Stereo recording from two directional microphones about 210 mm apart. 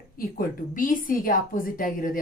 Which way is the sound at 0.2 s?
40° left (ahead or behind).